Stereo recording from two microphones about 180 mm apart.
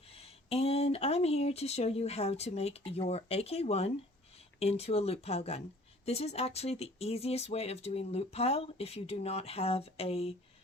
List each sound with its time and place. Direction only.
0.1 s speech: 35° left (ahead or behind)